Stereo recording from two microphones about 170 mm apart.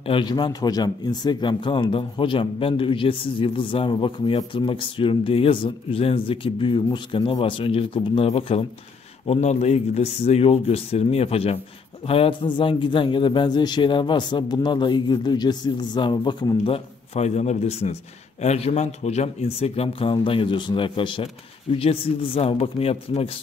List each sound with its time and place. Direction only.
0.0 s a man's voice: 30° left (ahead or behind)